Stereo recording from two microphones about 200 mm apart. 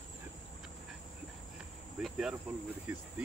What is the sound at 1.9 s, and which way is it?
Cricket, centre (ahead or behind).